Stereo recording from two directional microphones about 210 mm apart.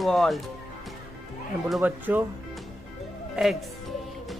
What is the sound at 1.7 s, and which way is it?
Speech, 5° right (ahead or behind).